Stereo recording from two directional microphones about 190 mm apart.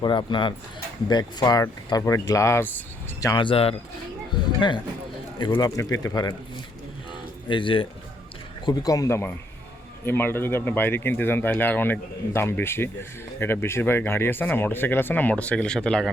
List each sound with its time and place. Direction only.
0.0 s speech: 25° left (ahead or behind)
5.5 s speech: 20° left (ahead or behind)
7.4 s speech: 25° left (ahead or behind); by 16.0 s 5° left (ahead or behind)